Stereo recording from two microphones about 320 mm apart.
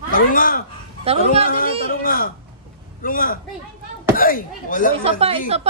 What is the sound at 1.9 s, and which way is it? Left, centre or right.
Speech, left.